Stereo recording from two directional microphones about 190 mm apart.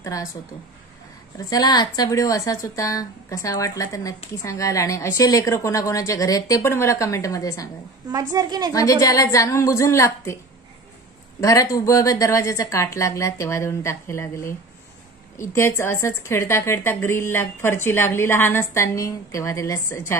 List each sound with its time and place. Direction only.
0.0 s speech: 15° left (ahead or behind)
1.4 s a woman's voice: 20° left (ahead or behind)
8.1 s a woman's voice: 20° right (ahead or behind)
8.7 s a woman's voice: 20° left (ahead or behind)
11.4 s a woman's voice: 15° left (ahead or behind)